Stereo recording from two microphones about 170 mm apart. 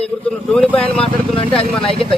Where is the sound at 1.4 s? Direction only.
30° left (ahead or behind).